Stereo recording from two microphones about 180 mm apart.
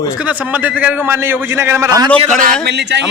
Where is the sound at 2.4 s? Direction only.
65° right (ahead or behind).